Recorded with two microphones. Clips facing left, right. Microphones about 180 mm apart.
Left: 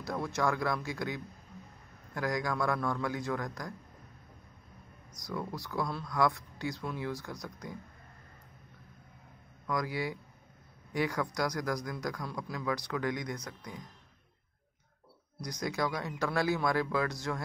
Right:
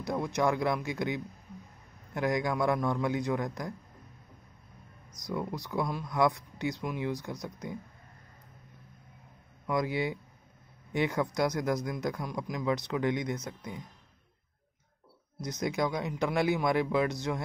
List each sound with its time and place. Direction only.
0.0 s a man's voice: 20° right (ahead or behind)
5.1 s a man's voice: 20° right (ahead or behind)
9.7 s a man's voice: 25° right (ahead or behind)
15.4 s a man's voice: 20° right (ahead or behind)